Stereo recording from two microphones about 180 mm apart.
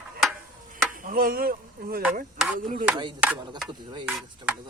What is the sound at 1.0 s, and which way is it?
Speech, 50° right (ahead or behind).